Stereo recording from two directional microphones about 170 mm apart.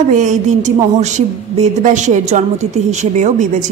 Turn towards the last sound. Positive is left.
turn(degrees=-45)  # may be behind; listen again after turning